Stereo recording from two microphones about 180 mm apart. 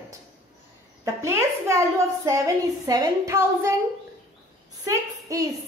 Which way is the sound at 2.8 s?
20° right (ahead or behind).